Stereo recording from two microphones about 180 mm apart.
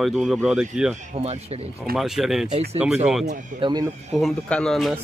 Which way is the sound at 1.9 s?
Centre (ahead or behind).